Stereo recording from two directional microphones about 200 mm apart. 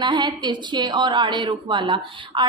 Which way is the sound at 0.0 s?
20° right (ahead or behind).